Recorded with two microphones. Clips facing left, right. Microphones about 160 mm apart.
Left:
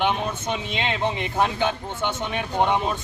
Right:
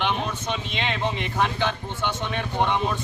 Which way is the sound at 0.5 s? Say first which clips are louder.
Left 2 dB; 15° left (ahead or behind).